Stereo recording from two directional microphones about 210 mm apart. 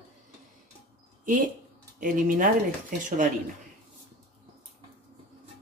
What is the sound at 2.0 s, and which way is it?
Speech, 40° right (ahead or behind).